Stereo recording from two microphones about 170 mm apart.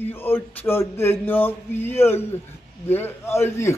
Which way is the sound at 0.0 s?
10° left (ahead or behind).